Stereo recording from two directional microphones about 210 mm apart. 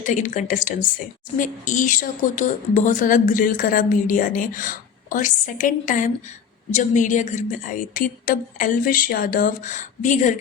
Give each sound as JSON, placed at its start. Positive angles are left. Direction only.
{"t": 0.0, "sound": "speech", "side_deg": 35}